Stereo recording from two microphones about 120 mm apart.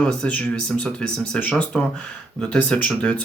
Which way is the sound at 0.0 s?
5° left (ahead or behind).